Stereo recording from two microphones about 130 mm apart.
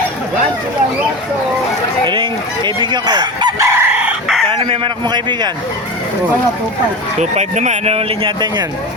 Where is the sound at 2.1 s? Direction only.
40° right (ahead or behind); by 3.8 s 25° right (ahead or behind).